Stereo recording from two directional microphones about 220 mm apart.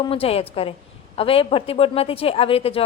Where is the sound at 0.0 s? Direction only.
25° left (ahead or behind).